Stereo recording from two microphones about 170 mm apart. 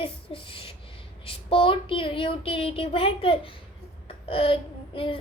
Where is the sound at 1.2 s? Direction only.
30° left (ahead or behind).